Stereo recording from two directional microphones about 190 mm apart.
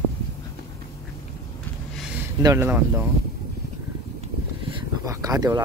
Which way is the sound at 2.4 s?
15° right (ahead or behind).